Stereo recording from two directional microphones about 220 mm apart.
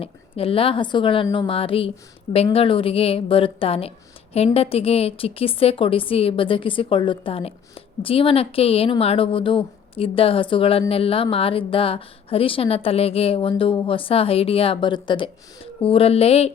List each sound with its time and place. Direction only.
0.0 s speech: 25° left (ahead or behind)